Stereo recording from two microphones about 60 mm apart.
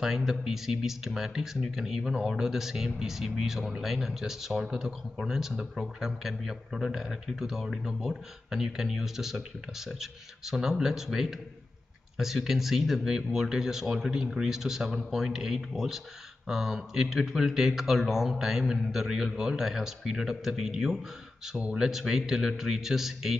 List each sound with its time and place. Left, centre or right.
0.0 s speech: centre
21.5 s speech: centre
21.8 s speech: centre